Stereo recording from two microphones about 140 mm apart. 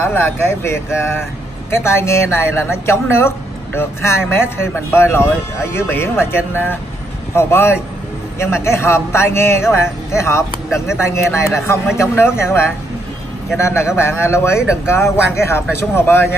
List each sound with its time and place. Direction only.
0.0 s a man's voice: 15° left (ahead or behind)